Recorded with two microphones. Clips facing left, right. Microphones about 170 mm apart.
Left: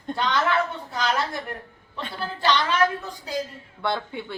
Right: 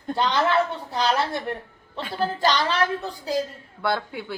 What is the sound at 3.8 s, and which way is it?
Speech, 5° right (ahead or behind).